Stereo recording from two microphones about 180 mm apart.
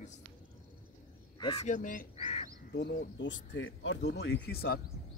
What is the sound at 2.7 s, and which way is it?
Speech, 70° left (ahead or behind).